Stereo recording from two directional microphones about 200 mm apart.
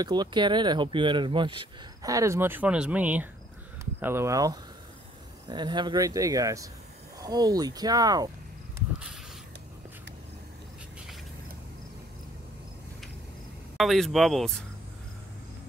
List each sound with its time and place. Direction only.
0.0 s speech: 20° right (ahead or behind)
13.7 s speech: centre (ahead or behind)